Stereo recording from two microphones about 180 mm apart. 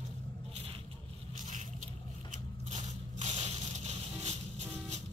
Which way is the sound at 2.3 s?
40° right (ahead or behind).